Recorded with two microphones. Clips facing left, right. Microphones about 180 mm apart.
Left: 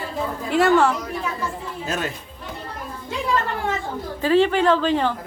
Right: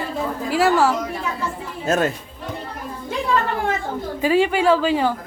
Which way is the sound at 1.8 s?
45° right (ahead or behind).